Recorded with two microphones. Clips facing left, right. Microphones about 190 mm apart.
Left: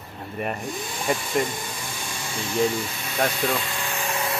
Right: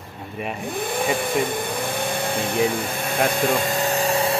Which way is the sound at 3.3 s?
50° right (ahead or behind).